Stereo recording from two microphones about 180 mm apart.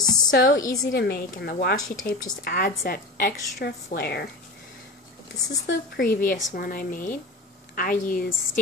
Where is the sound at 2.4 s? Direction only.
55° left (ahead or behind).